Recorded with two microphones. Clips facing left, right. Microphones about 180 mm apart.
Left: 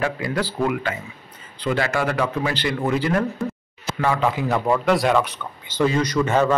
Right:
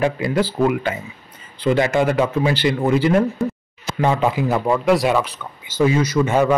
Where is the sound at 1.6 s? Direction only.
20° right (ahead or behind).